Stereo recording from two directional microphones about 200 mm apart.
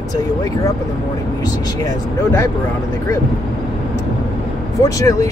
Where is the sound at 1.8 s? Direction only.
15° left (ahead or behind).